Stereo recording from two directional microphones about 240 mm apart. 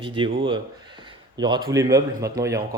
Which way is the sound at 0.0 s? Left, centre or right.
Centre.